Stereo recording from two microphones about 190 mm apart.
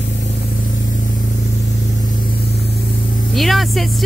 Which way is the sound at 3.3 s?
Centre (ahead or behind).